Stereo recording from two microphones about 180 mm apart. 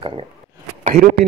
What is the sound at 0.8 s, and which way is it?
Speech, 40° right (ahead or behind).